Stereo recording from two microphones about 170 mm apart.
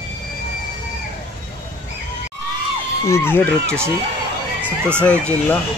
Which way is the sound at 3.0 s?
15° left (ahead or behind).